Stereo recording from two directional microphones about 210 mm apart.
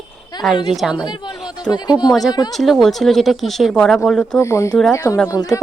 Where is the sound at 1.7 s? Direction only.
20° left (ahead or behind).